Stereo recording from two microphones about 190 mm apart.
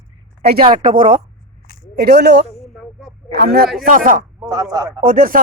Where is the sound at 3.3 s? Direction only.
60° right (ahead or behind).